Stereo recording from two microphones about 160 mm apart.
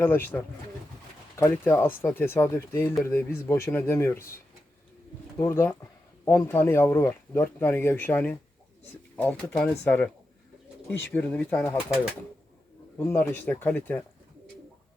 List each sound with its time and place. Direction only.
0.0 s speech: 15° left (ahead or behind)
5.4 s speech: 15° left (ahead or behind)
13.0 s speech: 10° left (ahead or behind)